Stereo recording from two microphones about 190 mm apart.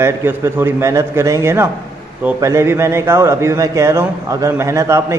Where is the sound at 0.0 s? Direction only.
15° right (ahead or behind).